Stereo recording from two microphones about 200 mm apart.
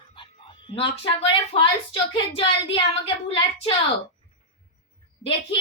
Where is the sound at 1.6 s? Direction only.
25° left (ahead or behind).